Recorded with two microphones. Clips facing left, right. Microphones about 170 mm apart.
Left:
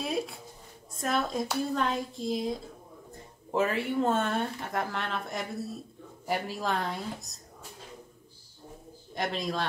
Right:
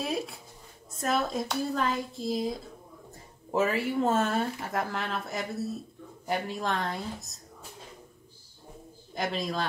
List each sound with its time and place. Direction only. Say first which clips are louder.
0.0 s a sound: even; centre (ahead or behind)
0.9 s speech: right 1 dB; centre (ahead or behind)
3.5 s speech: right 1 dB; 5° right (ahead or behind)
9.1 s speech: right 1 dB; centre (ahead or behind)